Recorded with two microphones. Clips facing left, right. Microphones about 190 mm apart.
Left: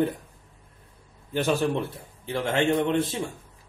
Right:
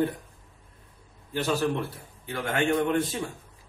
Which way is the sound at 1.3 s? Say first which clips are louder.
Left 2 dB; 15° left (ahead or behind).